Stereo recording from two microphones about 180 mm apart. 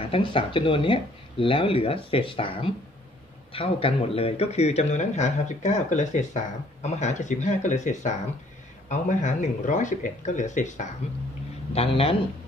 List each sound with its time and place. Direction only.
0.1 s speech: 30° left (ahead or behind)